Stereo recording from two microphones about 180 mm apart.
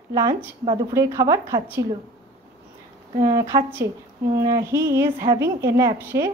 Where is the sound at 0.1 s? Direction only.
20° right (ahead or behind).